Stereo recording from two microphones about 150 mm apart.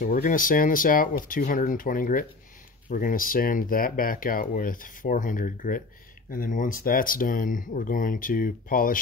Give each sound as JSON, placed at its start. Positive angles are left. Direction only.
{"t": 0.0, "sound": "speech", "side_deg": 65}